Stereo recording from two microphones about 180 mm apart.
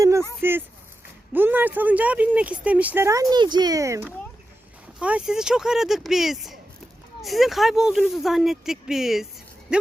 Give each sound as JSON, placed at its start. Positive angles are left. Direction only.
{"t": 0.0, "sound": "a sound", "side_deg": -15}
{"t": 1.3, "sound": "speech", "side_deg": -10}
{"t": 4.9, "sound": "speech", "side_deg": -5}